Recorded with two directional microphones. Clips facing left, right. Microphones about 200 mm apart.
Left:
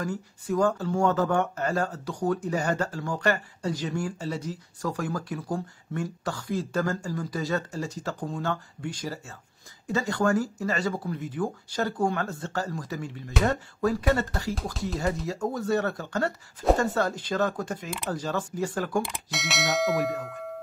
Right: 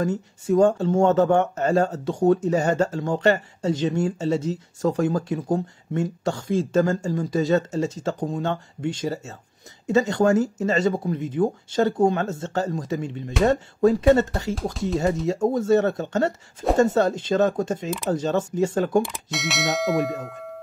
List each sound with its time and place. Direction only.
0.0 s speech: 25° right (ahead or behind)
14.5 s bell: centre (ahead or behind)
15.2 s speech: 25° right (ahead or behind)
19.3 s bell: centre (ahead or behind)